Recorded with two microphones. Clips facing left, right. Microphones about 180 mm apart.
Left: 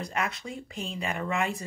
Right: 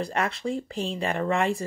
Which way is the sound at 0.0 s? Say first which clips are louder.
Right 5 dB; 30° right (ahead or behind).